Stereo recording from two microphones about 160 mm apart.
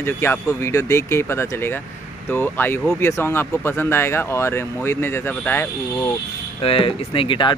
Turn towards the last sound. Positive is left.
turn(degrees=30)  # may be behind; listen again after turning